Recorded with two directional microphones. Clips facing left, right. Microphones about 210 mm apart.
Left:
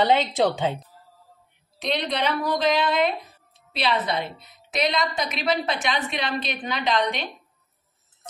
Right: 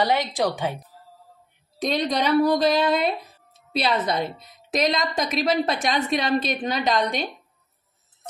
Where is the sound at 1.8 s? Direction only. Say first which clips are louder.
Right 3 dB; 45° right (ahead or behind).